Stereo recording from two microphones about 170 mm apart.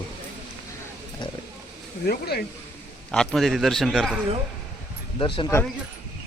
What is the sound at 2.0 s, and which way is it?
Speech, 65° left (ahead or behind).